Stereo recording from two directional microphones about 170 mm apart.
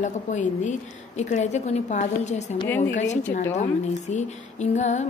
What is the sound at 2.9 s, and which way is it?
A woman's voice, 45° left (ahead or behind).